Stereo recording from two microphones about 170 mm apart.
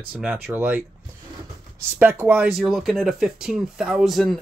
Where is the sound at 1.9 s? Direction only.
10° right (ahead or behind).